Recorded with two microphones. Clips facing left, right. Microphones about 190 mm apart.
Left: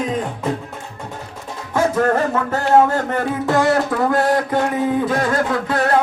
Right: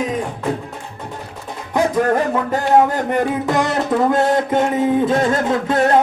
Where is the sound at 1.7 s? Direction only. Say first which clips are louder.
Right 1 dB; 15° right (ahead or behind).